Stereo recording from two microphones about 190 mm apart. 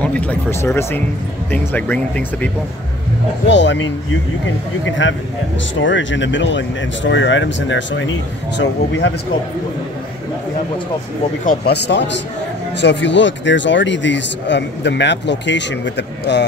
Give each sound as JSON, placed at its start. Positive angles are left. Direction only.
{"t": 0.0, "sound": "speech", "side_deg": 5}
{"t": 3.4, "sound": "a man's voice", "side_deg": 70}
{"t": 11.4, "sound": "speech", "side_deg": 60}